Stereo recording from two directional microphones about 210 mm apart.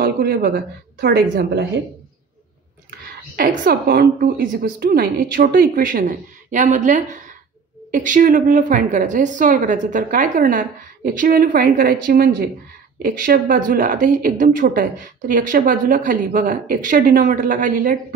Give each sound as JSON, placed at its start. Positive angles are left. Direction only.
{"t": 0.0, "sound": "a sound", "side_deg": -45}
{"t": 1.0, "sound": "a woman's voice", "side_deg": -50}
{"t": 3.3, "sound": "speech", "side_deg": -45}